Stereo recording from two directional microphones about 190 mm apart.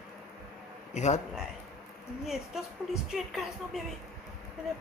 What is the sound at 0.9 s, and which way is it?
Speech, 35° left (ahead or behind).